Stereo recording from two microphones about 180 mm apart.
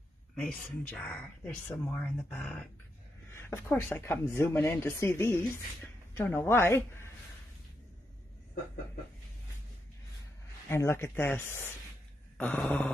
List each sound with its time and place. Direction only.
0.4 s speech: 10° left (ahead or behind)
3.3 s speech: 15° left (ahead or behind)
10.7 s speech: 15° left (ahead or behind)
12.4 s a sound: 5° left (ahead or behind)